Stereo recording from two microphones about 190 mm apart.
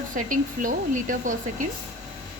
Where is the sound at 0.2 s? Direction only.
45° right (ahead or behind).